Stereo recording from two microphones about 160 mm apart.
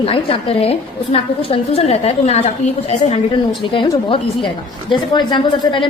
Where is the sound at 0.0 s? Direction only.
35° left (ahead or behind).